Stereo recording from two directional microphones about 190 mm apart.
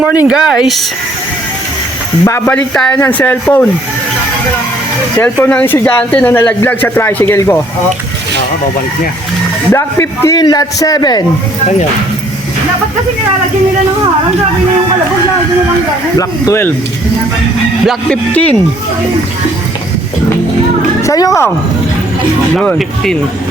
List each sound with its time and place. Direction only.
0.0 s speech: 10° right (ahead or behind)
2.2 s speech: 15° left (ahead or behind)
5.2 s speech: 10° left (ahead or behind)
9.7 s a man's voice: 15° left (ahead or behind)
16.1 s speech: 15° left (ahead or behind)
17.8 s speech: 5° left (ahead or behind)
21.0 s speech: 15° left (ahead or behind)
22.5 s speech: 5° left (ahead or behind)